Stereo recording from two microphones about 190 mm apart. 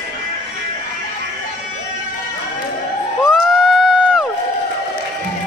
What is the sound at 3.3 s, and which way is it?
Crowd, centre (ahead or behind).